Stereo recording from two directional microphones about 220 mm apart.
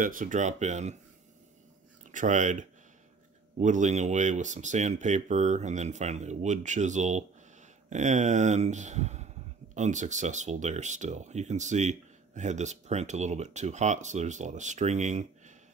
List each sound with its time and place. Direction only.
0.0 s speech: 35° right (ahead or behind)
2.0 s speech: 35° right (ahead or behind)